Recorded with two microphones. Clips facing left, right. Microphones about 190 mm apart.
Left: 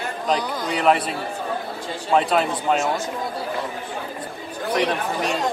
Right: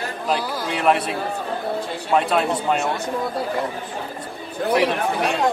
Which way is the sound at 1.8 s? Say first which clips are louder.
Right 2 dB; 60° right (ahead or behind).